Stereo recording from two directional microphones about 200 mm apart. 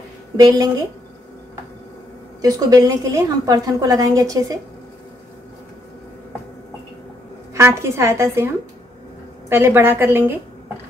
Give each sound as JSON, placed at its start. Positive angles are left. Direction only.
{"t": 0.4, "sound": "a woman's voice", "side_deg": -20}
{"t": 2.4, "sound": "a woman's voice", "side_deg": -15}
{"t": 7.5, "sound": "a woman's voice", "side_deg": -15}